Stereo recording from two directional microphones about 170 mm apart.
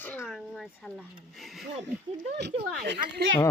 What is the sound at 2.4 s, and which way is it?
Speech, 75° right (ahead or behind).